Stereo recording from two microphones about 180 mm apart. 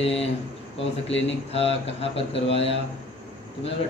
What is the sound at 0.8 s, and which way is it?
Speech, 90° left.